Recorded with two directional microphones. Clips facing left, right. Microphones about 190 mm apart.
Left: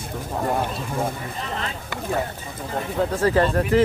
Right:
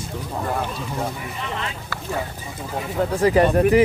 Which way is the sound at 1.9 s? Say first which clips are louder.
Left 3 dB; 20° left (ahead or behind).